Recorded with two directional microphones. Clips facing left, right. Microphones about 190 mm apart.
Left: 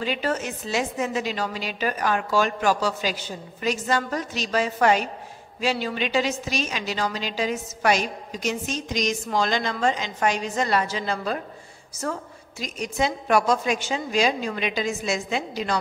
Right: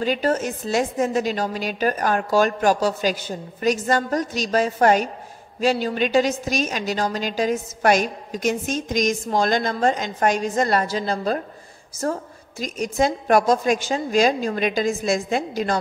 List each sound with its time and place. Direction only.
0.0 s a woman's voice: 40° right (ahead or behind)